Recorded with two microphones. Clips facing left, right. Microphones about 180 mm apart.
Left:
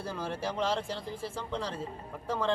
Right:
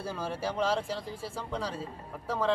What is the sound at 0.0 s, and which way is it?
Speech, 5° right (ahead or behind).